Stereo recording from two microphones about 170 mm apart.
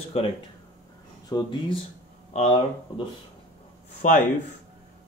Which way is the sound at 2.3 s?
40° left (ahead or behind).